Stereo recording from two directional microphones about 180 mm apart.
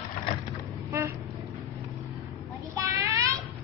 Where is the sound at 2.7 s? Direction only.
20° right (ahead or behind).